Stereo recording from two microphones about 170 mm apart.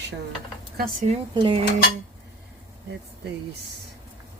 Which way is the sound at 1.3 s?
30° right (ahead or behind).